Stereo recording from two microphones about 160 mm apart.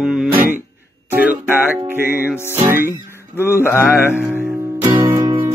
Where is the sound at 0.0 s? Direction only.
Centre (ahead or behind).